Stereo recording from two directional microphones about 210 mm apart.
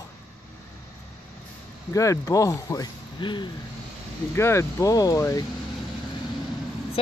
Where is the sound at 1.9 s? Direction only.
15° left (ahead or behind).